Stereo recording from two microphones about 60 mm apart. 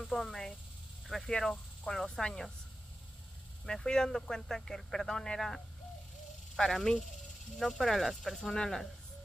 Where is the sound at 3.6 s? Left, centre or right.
Centre.